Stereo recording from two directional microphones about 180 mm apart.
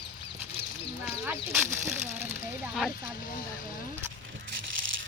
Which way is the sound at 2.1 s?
10° right (ahead or behind).